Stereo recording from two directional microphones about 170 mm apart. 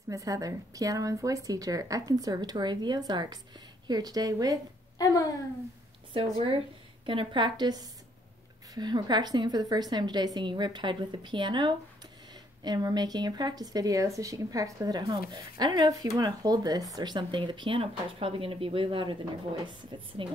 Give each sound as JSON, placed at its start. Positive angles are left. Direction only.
{"t": 0.1, "sound": "speech", "side_deg": -20}
{"t": 4.9, "sound": "a sound", "side_deg": 20}
{"t": 6.1, "sound": "speech", "side_deg": -30}